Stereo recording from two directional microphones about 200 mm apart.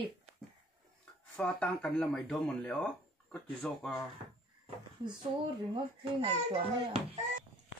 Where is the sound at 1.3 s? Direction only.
5° left (ahead or behind).